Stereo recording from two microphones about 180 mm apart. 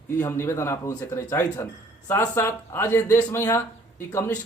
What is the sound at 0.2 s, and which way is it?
Speech, 15° left (ahead or behind).